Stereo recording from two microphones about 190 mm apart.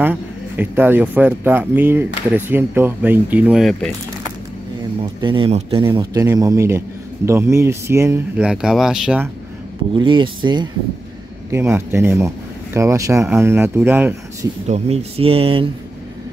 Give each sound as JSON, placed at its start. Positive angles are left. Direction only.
{"t": 0.0, "sound": "speech", "side_deg": -10}
{"t": 5.2, "sound": "speech", "side_deg": -25}
{"t": 6.2, "sound": "speech", "side_deg": -15}
{"t": 9.9, "sound": "speech", "side_deg": -25}
{"t": 11.5, "sound": "speech", "side_deg": -15}
{"t": 14.7, "sound": "speech", "side_deg": -35}